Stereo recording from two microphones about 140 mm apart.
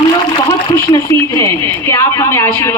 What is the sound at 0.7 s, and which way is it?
A woman's voice, 30° left (ahead or behind).